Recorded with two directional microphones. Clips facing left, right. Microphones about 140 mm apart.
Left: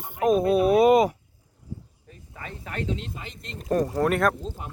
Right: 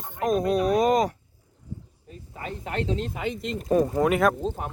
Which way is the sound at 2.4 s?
25° right (ahead or behind).